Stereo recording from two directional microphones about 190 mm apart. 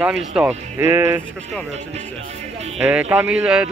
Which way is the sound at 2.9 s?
5° right (ahead or behind).